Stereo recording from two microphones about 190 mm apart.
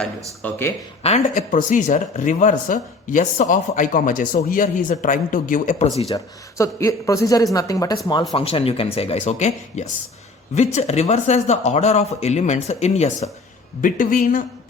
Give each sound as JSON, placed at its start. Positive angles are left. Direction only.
{"t": 0.4, "sound": "a man's voice", "side_deg": 10}
{"t": 1.0, "sound": "speech", "side_deg": 35}
{"t": 6.1, "sound": "a man's voice", "side_deg": 15}
{"t": 8.3, "sound": "speech", "side_deg": 30}